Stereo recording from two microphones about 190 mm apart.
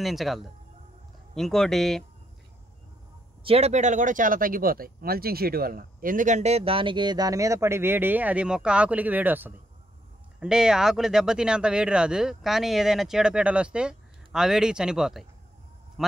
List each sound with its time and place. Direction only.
0.0 s speech: centre (ahead or behind)
3.4 s speech: 35° right (ahead or behind); by 15.2 s centre (ahead or behind)